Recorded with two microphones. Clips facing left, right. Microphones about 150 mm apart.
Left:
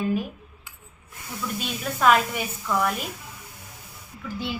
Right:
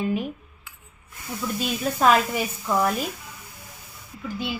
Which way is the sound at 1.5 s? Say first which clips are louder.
Right 5 dB; 35° right (ahead or behind).